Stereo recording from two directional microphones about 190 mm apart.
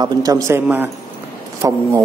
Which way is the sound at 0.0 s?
20° right (ahead or behind).